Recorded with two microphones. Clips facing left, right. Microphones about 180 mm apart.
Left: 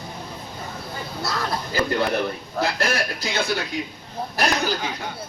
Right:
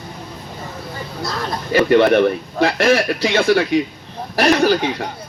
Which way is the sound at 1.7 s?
80° right.